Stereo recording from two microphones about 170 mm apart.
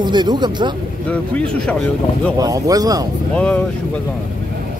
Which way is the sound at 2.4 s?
20° right (ahead or behind).